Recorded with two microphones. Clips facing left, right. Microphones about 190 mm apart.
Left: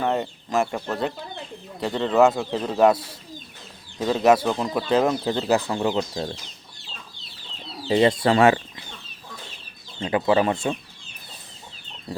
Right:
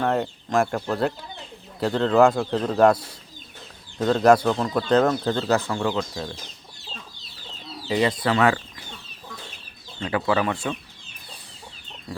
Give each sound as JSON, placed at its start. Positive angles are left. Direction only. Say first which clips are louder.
{"t": 0.0, "sound": "speech", "louder": "right 1 dB", "side_deg": 0}
{"t": 7.9, "sound": "speech", "louder": "left 4 dB", "side_deg": 25}
{"t": 10.0, "sound": "speech", "louder": "left 3 dB", "side_deg": 20}